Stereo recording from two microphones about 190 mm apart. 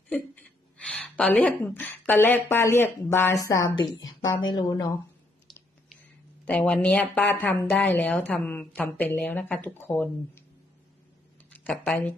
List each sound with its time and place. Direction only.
0.1 s a woman's voice: 5° left (ahead or behind)
5.5 s a sound: centre (ahead or behind)
6.4 s a woman's voice: 5° left (ahead or behind)
11.5 s speech: 10° left (ahead or behind)